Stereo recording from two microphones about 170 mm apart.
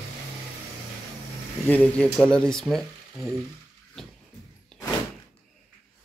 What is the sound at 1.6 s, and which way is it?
Speech, 10° left (ahead or behind).